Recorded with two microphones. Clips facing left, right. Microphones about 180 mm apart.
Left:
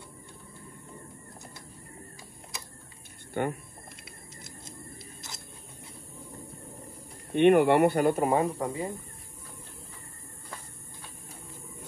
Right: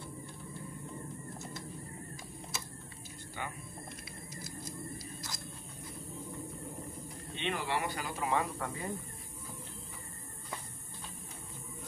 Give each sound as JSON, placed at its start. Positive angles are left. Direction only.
{"t": 3.4, "sound": "speech", "side_deg": 55}
{"t": 4.6, "sound": "a sound", "side_deg": 25}
{"t": 7.3, "sound": "speech", "side_deg": 60}
{"t": 8.5, "sound": "speech", "side_deg": 20}